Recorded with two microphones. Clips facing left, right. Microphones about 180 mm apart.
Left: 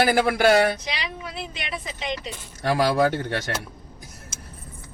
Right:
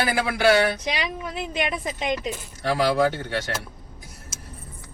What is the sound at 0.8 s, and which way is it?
A woman's voice, 50° right (ahead or behind).